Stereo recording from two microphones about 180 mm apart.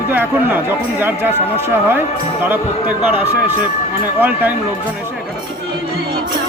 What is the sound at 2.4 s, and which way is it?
Speech, 10° right (ahead or behind).